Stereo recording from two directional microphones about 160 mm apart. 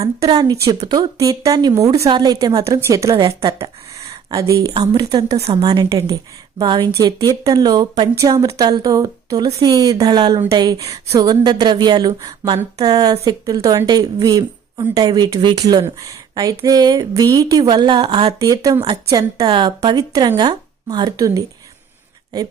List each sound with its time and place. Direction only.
0.0 s a woman's voice: 20° right (ahead or behind)
3.2 s a sound: 30° right (ahead or behind)
4.1 s a woman's voice: 20° right (ahead or behind)
18.3 s a woman's voice: 20° right (ahead or behind)